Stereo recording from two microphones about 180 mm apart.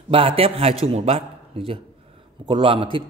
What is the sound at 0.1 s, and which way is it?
A man's voice, 30° right (ahead or behind).